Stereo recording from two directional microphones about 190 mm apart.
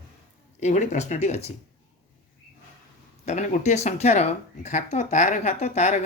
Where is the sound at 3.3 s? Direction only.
35° left (ahead or behind).